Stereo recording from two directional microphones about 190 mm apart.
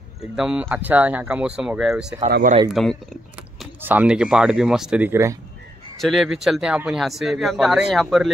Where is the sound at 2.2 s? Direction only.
45° right (ahead or behind).